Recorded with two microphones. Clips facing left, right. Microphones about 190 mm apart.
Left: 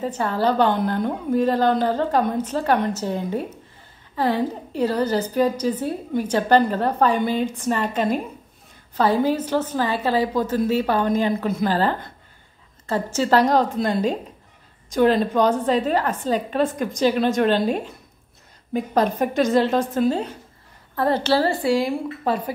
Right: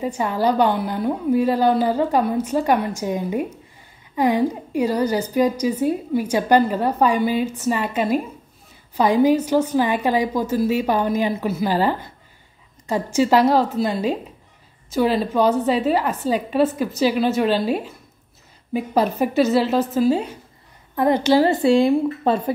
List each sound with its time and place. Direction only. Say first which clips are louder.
0.0 s a woman's voice: right 1 dB; 10° right (ahead or behind)